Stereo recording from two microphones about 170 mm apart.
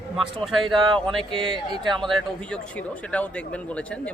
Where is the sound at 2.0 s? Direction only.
Centre (ahead or behind).